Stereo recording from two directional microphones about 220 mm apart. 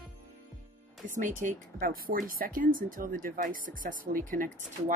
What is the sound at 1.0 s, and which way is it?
Speech, 35° right (ahead or behind).